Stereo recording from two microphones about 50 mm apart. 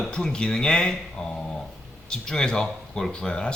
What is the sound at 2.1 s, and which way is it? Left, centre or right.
Speech, centre.